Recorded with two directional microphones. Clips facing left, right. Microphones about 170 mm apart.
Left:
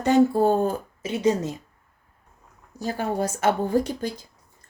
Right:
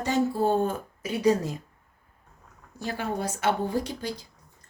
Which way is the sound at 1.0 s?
25° left (ahead or behind).